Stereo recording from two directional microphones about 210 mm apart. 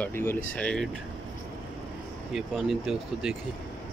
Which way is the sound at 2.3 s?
Centre (ahead or behind).